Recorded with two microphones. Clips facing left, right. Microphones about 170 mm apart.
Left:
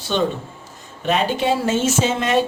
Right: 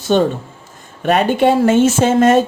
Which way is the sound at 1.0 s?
55° right (ahead or behind).